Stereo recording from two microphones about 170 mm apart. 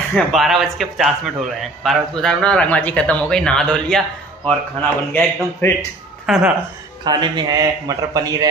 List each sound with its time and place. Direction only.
0.1 s speech: centre (ahead or behind)
6.2 s speech: 5° right (ahead or behind)
7.1 s a man's voice: 25° right (ahead or behind)